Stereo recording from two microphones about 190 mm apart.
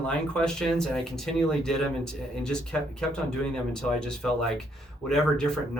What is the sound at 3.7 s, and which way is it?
Speech, 5° left (ahead or behind).